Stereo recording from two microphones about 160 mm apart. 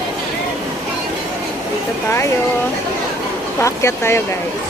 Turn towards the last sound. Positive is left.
turn(degrees=15)  # may be behind; listen again after turning